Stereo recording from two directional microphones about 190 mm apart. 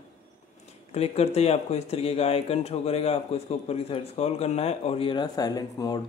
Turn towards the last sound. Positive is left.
turn(degrees=20)  # may be behind; listen again after turning